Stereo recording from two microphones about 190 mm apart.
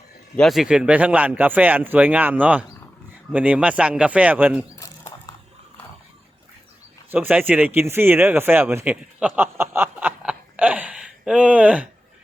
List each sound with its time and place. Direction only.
0.3 s speech: centre (ahead or behind)
4.8 s a sound: 20° left (ahead or behind)
7.1 s speech: 10° right (ahead or behind)